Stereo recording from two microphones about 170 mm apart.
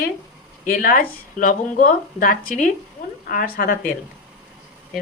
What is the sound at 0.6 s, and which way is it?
Speech, 55° left (ahead or behind).